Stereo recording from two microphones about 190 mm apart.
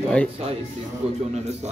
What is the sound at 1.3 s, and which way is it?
Speech, 35° right (ahead or behind).